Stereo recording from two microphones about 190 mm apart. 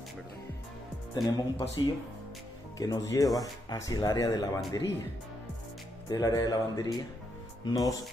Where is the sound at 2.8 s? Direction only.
20° left (ahead or behind).